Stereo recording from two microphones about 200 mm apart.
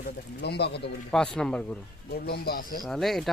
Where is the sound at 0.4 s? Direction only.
55° left (ahead or behind).